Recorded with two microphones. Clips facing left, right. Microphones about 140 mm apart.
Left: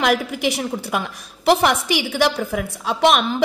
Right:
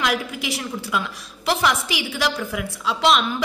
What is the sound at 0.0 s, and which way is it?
A woman's voice, 60° left (ahead or behind).